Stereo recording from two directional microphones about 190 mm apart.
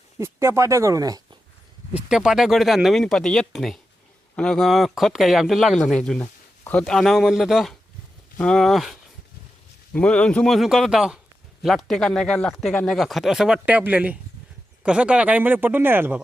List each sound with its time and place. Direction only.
0.2 s speech: 15° right (ahead or behind)
1.9 s speech: 5° right (ahead or behind)